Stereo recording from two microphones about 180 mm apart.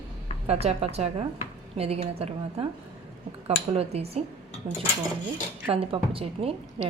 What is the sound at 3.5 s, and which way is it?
Speech, 35° right (ahead or behind).